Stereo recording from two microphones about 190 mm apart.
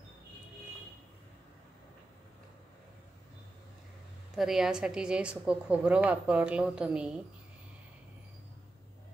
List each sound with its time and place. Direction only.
4.4 s speech: centre (ahead or behind)